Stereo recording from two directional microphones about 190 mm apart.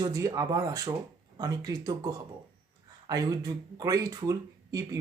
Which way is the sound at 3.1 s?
20° right (ahead or behind).